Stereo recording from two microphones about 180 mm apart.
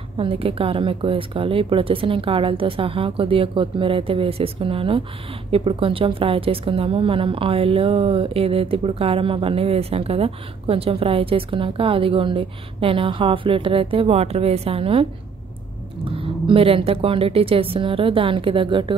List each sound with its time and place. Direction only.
0.2 s a woman's voice: 30° right (ahead or behind)